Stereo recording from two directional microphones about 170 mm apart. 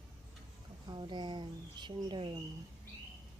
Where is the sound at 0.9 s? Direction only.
25° right (ahead or behind).